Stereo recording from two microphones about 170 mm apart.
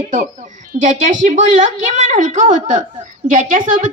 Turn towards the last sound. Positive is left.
turn(degrees=-50)  # may be behind; listen again after turning